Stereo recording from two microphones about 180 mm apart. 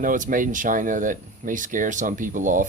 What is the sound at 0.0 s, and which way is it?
Speech, 50° right (ahead or behind).